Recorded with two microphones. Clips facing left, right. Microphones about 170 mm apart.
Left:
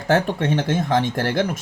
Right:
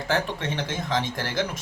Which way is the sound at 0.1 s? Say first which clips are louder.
Left 8 dB; 50° left (ahead or behind).